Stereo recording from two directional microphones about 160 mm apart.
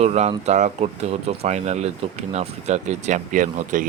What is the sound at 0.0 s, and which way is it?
Speech, 40° right (ahead or behind).